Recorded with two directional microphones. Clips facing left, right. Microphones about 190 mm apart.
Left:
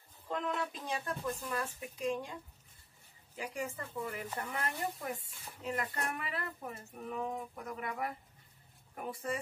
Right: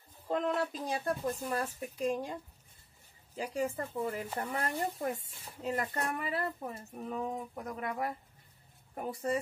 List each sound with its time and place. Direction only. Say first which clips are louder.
0.3 s speech: right 5 dB; 35° right (ahead or behind)
3.3 s speech: right 6 dB; 35° right (ahead or behind)